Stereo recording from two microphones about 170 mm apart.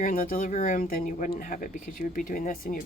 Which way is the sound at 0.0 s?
55° left (ahead or behind).